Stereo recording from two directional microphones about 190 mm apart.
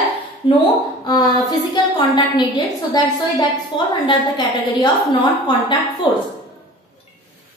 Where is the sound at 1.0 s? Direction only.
20° left (ahead or behind).